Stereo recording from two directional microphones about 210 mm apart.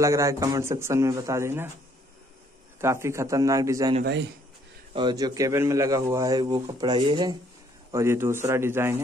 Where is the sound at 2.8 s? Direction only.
15° right (ahead or behind).